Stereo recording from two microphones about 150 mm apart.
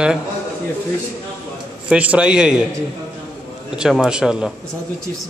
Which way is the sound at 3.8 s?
5° right (ahead or behind).